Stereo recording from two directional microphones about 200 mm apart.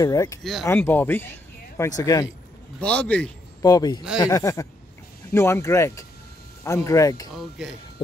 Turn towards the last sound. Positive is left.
turn(degrees=0)  # may be behind; listen again after turning